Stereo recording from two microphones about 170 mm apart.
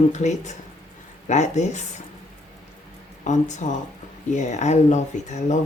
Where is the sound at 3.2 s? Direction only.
45° left (ahead or behind).